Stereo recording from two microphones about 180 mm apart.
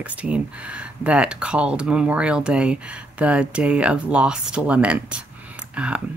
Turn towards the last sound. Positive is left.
turn(degrees=-5)  # may be behind; listen again after turning